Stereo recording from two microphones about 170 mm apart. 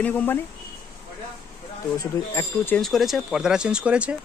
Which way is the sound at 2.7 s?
Centre (ahead or behind).